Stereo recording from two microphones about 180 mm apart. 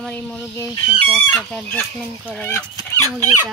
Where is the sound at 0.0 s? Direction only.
5° left (ahead or behind).